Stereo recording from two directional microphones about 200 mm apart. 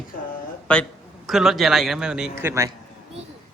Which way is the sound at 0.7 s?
5° left (ahead or behind).